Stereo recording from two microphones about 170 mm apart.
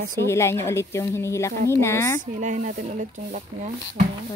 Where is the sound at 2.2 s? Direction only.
45° right (ahead or behind).